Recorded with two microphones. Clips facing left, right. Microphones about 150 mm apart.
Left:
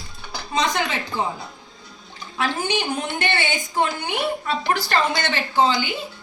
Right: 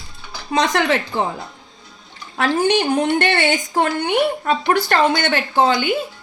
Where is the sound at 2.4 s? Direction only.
65° right (ahead or behind).